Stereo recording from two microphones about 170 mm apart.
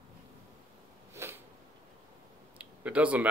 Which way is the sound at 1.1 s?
15° right (ahead or behind).